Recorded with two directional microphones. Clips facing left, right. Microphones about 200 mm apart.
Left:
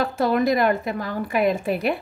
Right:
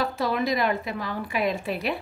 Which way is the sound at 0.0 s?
50° left (ahead or behind).